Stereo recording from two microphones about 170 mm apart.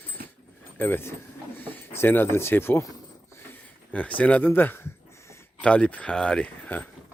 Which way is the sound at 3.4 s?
10° left (ahead or behind).